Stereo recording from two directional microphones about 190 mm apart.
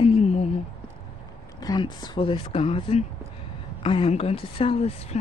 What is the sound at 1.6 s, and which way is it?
Speech, 20° left (ahead or behind).